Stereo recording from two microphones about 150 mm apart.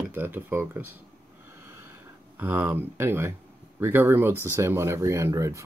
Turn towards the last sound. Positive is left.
turn(degrees=-20)  # may be behind; listen again after turning